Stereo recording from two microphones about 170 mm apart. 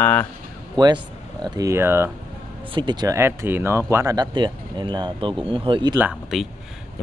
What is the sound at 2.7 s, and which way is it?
Speech, 25° right (ahead or behind).